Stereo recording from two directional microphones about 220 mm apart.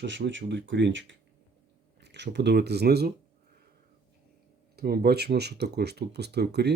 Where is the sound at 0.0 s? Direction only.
55° right (ahead or behind).